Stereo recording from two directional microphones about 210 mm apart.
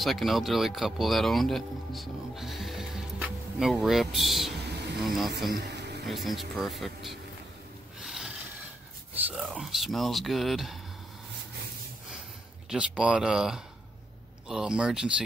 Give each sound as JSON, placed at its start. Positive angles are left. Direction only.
{"t": 0.0, "sound": "speech", "side_deg": 0}
{"t": 5.5, "sound": "music", "side_deg": -55}
{"t": 6.0, "sound": "speech", "side_deg": 0}
{"t": 8.0, "sound": "a sound", "side_deg": 0}
{"t": 9.3, "sound": "speech", "side_deg": 0}
{"t": 12.6, "sound": "speech", "side_deg": -5}